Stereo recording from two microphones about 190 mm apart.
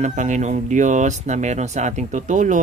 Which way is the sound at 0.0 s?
40° right (ahead or behind).